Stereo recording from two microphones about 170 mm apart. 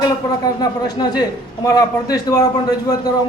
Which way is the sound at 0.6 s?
25° left (ahead or behind).